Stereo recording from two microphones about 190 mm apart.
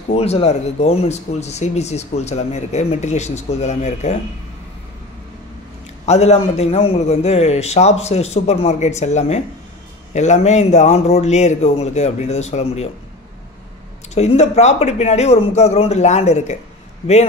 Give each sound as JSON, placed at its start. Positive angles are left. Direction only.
{"t": 0.1, "sound": "speech", "side_deg": 30}
{"t": 6.0, "sound": "speech", "side_deg": 35}
{"t": 14.1, "sound": "speech", "side_deg": 35}